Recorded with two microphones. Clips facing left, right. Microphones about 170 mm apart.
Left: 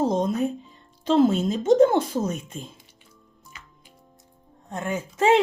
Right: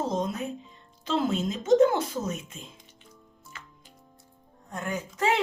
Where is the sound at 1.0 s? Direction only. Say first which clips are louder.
Left 8 dB; 40° left (ahead or behind).